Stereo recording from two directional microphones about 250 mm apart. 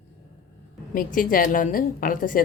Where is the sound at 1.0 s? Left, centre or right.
Left.